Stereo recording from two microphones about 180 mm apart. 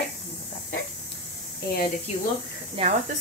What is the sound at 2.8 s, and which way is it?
Speech, 30° right (ahead or behind).